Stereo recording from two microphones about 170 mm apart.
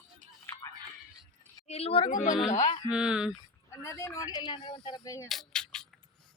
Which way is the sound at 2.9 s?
5° right (ahead or behind).